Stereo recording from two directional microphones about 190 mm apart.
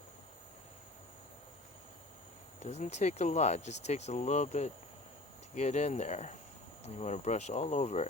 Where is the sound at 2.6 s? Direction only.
35° left (ahead or behind).